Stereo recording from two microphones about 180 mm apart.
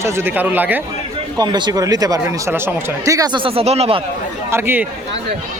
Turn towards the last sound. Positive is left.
turn(degrees=-10)  # may be behind; listen again after turning